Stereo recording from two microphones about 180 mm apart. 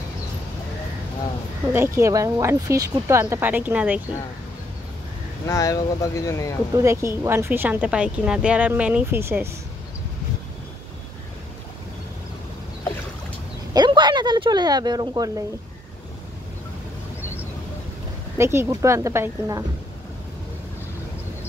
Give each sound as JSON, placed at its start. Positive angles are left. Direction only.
{"t": 1.7, "sound": "speech", "side_deg": -15}
{"t": 5.5, "sound": "speech", "side_deg": 20}
{"t": 6.7, "sound": "speech", "side_deg": -15}
{"t": 13.7, "sound": "a sound", "side_deg": -25}
{"t": 18.4, "sound": "speech", "side_deg": -15}